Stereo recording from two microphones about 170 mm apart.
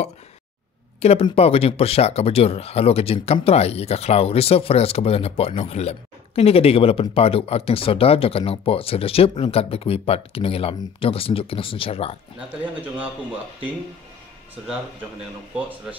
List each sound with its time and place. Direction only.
1.0 s speech: 35° left (ahead or behind)